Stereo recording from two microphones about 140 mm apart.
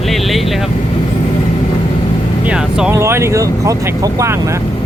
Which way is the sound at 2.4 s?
5° right (ahead or behind).